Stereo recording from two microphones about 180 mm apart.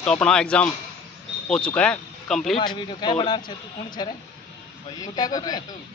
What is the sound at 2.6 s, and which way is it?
A man's voice, 25° left (ahead or behind).